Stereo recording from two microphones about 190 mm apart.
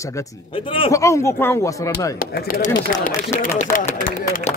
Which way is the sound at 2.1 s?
50° left (ahead or behind).